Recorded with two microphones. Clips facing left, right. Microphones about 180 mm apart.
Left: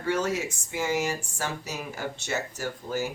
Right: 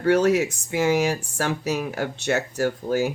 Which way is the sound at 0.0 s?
70° right (ahead or behind).